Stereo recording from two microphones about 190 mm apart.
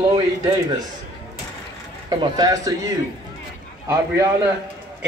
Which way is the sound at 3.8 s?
15° right (ahead or behind).